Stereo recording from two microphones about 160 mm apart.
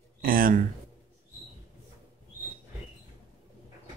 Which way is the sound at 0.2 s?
65° right (ahead or behind).